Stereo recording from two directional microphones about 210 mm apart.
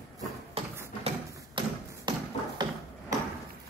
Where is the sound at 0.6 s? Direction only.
25° right (ahead or behind).